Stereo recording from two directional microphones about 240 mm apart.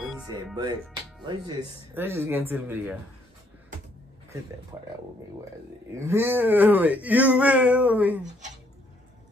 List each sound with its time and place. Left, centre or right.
0.0 s music: centre
2.0 s speech: centre
4.7 s speech: centre
5.9 s speech: centre